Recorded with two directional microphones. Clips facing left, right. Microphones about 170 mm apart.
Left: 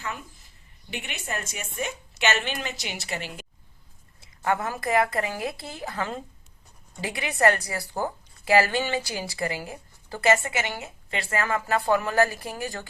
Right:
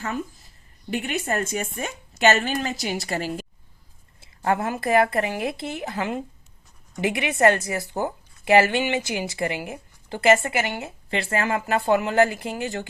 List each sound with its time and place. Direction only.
0.9 s a woman's voice: 45° right (ahead or behind)
4.2 s a woman's voice: 30° right (ahead or behind)